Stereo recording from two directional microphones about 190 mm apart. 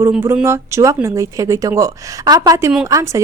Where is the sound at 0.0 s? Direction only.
10° right (ahead or behind).